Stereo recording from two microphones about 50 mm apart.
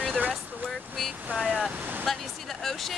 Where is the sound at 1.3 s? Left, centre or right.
Right.